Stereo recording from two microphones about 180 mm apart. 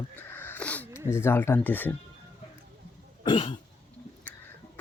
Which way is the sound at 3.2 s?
25° left (ahead or behind).